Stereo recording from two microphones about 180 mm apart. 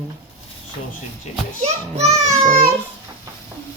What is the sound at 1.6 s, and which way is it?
Speech, 35° right (ahead or behind).